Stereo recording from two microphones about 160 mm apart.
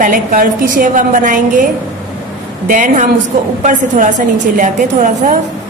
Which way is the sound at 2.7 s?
50° right (ahead or behind).